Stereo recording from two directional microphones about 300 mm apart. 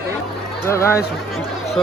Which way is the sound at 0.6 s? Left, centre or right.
Centre.